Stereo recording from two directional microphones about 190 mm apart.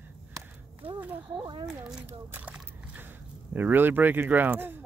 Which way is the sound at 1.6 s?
5° right (ahead or behind).